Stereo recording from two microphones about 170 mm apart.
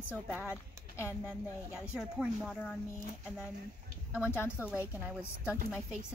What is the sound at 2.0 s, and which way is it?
Speech, centre (ahead or behind).